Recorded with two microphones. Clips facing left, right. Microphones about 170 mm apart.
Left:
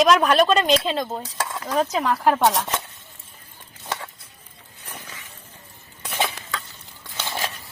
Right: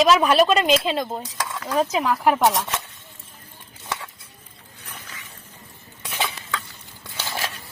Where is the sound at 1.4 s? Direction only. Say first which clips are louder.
Left 3 dB; 15° left (ahead or behind).